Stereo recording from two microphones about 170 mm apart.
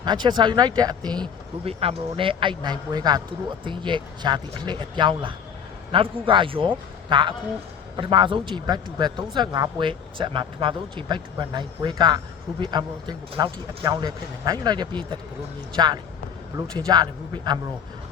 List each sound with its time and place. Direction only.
0.0 s speech: 25° right (ahead or behind)